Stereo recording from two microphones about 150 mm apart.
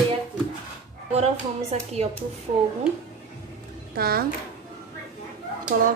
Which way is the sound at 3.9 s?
90° right.